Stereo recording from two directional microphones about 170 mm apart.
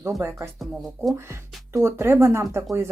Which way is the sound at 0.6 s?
Centre (ahead or behind).